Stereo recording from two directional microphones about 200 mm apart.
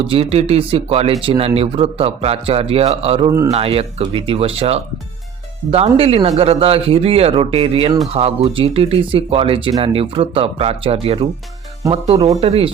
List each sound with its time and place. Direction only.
0.0 s speech: 25° right (ahead or behind)